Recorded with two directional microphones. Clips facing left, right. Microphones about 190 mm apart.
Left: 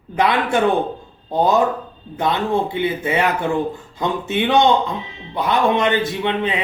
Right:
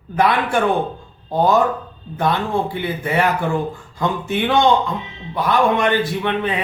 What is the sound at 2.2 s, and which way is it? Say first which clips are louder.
Speech: even; 20° left (ahead or behind).